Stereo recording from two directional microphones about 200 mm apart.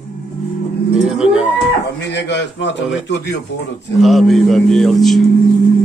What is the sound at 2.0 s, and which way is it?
A man's voice, 60° left (ahead or behind).